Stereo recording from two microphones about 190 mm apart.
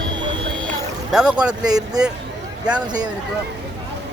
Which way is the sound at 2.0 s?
20° right (ahead or behind).